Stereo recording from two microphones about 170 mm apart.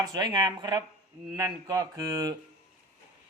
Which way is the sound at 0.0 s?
25° right (ahead or behind).